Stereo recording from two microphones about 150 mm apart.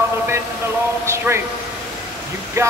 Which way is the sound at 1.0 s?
15° right (ahead or behind).